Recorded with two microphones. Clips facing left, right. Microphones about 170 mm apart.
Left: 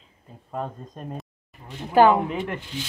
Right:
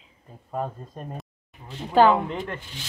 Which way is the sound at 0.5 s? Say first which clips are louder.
Right 1 dB; 5° right (ahead or behind).